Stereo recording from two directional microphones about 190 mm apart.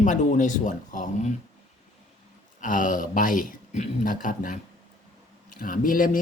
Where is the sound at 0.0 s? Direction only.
40° left (ahead or behind).